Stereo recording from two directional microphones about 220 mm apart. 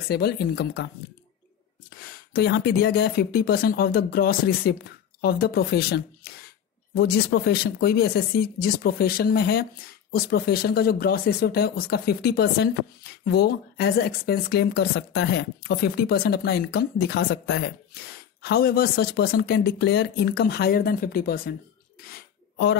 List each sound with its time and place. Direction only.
0.1 s speech: 45° left (ahead or behind)
1.9 s speech: 45° left (ahead or behind)
22.1 s a sound: 50° left (ahead or behind)